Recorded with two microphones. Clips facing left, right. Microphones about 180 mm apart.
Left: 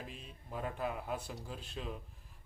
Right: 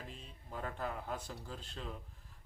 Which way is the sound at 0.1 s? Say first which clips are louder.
Left 2 dB; 5° left (ahead or behind).